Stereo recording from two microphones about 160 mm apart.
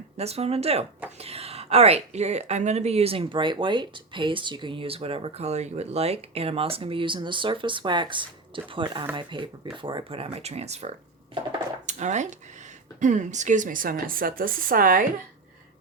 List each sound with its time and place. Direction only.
0.2 s a woman's voice: 40° right (ahead or behind); by 15.0 s 65° right (ahead or behind)